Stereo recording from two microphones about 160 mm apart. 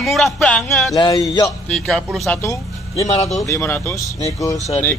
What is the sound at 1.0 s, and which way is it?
Speech, 25° left (ahead or behind).